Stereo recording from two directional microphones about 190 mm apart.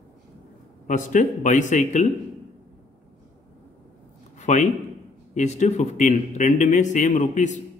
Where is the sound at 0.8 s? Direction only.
40° left (ahead or behind).